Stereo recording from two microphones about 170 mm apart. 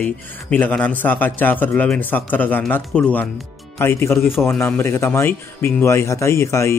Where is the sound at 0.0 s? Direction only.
10° left (ahead or behind).